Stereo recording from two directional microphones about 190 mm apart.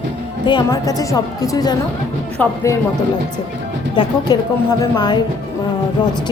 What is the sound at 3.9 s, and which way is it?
A woman's voice, 25° left (ahead or behind).